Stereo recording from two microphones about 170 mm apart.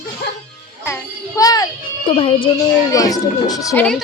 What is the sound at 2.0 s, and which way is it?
Speech, 30° left (ahead or behind).